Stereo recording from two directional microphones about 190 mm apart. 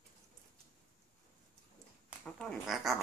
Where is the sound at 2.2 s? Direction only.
5° left (ahead or behind).